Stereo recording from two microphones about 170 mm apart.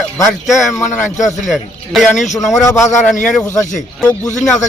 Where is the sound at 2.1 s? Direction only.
45° left (ahead or behind).